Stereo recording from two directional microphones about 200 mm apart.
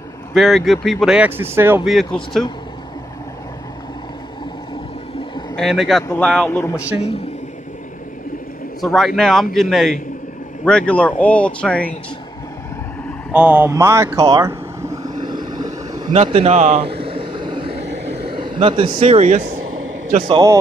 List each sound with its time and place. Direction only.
0.3 s speech: centre (ahead or behind)
1.9 s speech: centre (ahead or behind)
5.6 s a man's voice: centre (ahead or behind)
8.8 s speech: centre (ahead or behind)
13.3 s speech: 5° right (ahead or behind)
15.2 s vehicle: 20° right (ahead or behind)
16.1 s vehicle: 30° right (ahead or behind)
17.8 s vehicle: 55° right (ahead or behind)
18.3 s speech: 25° right (ahead or behind)
19.6 s a sound: 90° right
20.1 s a man's voice: 30° right (ahead or behind)